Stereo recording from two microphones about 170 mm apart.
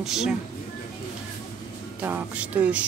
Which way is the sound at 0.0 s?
5° right (ahead or behind).